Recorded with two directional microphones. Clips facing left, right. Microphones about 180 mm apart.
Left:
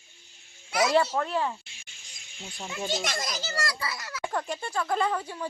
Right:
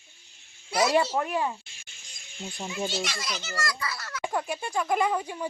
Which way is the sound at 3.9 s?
10° left (ahead or behind).